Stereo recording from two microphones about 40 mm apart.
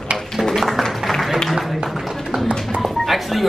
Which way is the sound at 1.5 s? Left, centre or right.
Centre.